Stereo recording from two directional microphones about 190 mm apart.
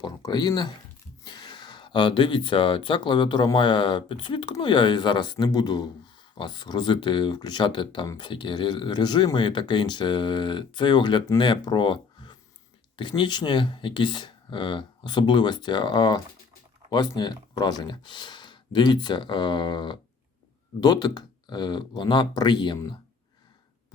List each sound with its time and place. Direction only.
0.0 s speech: 20° left (ahead or behind)